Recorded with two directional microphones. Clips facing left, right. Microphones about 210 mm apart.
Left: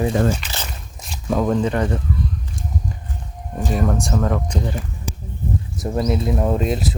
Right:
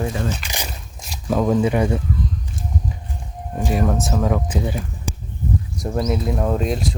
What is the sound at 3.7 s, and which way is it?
Speech, centre (ahead or behind).